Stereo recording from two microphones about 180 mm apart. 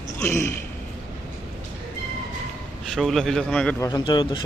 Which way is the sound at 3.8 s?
25° left (ahead or behind).